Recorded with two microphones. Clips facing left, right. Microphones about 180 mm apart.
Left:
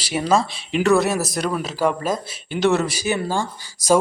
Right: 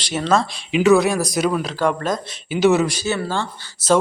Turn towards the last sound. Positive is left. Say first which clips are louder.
# even
turn(degrees=10)  # may be behind; listen again after turning